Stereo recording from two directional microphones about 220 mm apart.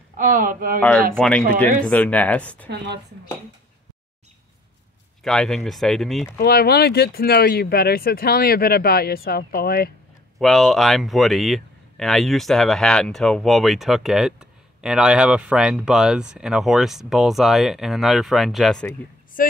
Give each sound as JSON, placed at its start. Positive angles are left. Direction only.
{"t": 0.2, "sound": "speech", "side_deg": -40}
{"t": 0.7, "sound": "speech", "side_deg": 5}
{"t": 2.7, "sound": "speech", "side_deg": -50}
{"t": 5.2, "sound": "speech", "side_deg": 5}
{"t": 6.3, "sound": "speech", "side_deg": 45}
{"t": 10.4, "sound": "speech", "side_deg": 0}
{"t": 19.4, "sound": "a woman's voice", "side_deg": 40}